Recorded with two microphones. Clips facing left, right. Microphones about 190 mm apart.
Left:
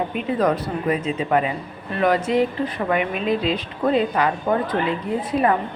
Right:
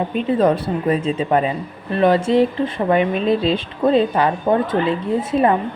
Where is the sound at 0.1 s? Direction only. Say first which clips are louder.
Right 4 dB; 30° right (ahead or behind).